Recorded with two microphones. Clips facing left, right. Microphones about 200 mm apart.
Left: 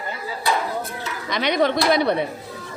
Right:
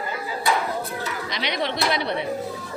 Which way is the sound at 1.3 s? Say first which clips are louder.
Left 9 dB; 50° left (ahead or behind).